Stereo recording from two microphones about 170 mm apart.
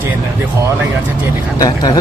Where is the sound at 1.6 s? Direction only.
20° left (ahead or behind).